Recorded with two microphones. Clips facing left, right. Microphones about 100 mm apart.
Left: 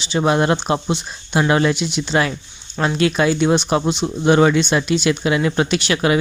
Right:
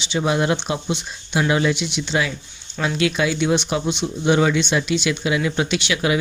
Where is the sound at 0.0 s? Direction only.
45° left (ahead or behind).